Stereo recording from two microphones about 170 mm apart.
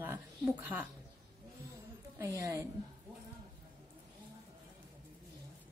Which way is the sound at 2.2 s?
15° right (ahead or behind).